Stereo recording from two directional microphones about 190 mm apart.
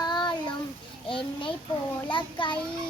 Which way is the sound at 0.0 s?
25° left (ahead or behind).